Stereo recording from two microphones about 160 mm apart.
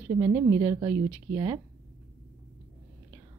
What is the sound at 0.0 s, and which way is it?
A woman's voice, 15° right (ahead or behind).